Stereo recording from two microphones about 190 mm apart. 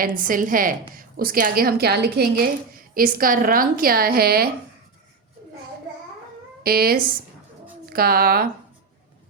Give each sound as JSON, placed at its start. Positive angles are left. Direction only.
{"t": 0.0, "sound": "a woman's voice", "side_deg": -45}
{"t": 6.6, "sound": "a woman's voice", "side_deg": -55}